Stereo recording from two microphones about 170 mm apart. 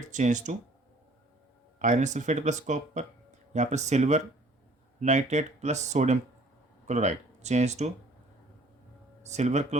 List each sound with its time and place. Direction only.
0.1 s speech: 45° right (ahead or behind)
1.8 s speech: 45° right (ahead or behind)
9.2 s speech: 40° right (ahead or behind)